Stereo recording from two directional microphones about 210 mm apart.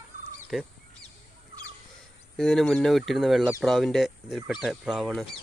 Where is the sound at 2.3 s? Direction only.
Centre (ahead or behind).